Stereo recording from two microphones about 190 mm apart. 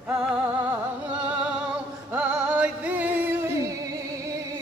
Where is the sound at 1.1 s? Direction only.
5° right (ahead or behind).